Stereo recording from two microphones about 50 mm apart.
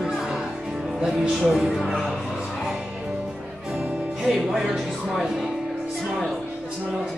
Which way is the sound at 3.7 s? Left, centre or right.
Centre.